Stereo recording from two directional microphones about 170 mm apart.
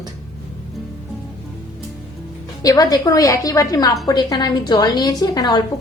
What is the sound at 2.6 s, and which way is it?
A woman's voice, 20° left (ahead or behind).